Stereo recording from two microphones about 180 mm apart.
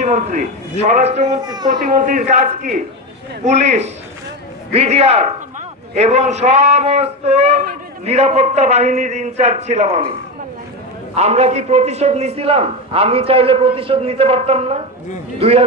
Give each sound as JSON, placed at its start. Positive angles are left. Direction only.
{"t": 0.0, "sound": "speech", "side_deg": -40}
{"t": 1.4, "sound": "a child's voice", "side_deg": -20}
{"t": 1.7, "sound": "a man's voice", "side_deg": -45}
{"t": 11.1, "sound": "speech", "side_deg": -35}